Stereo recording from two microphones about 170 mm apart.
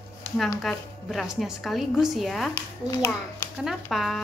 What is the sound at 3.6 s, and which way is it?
Speech, centre (ahead or behind).